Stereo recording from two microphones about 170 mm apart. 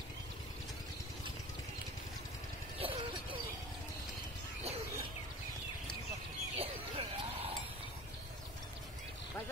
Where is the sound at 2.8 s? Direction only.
35° right (ahead or behind).